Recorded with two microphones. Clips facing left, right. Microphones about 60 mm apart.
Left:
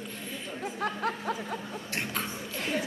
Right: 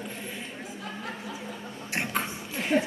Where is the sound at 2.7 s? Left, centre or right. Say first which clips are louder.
Right 8 dB; right.